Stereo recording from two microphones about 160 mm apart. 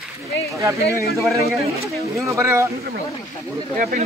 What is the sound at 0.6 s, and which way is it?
Speech, 20° right (ahead or behind).